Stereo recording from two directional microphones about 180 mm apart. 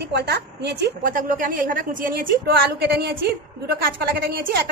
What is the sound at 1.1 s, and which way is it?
A woman's voice, 50° right (ahead or behind).